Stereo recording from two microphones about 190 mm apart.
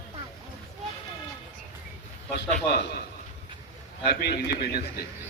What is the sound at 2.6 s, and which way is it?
Speech, 55° left (ahead or behind).